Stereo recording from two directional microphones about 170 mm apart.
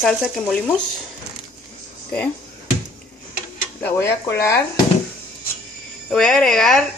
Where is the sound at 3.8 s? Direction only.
10° left (ahead or behind).